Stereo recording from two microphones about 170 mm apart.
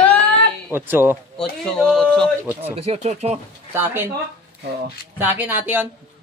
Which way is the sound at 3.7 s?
15° right (ahead or behind).